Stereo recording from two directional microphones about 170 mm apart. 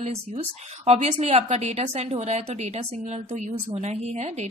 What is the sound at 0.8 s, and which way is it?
A woman's voice, 40° right (ahead or behind).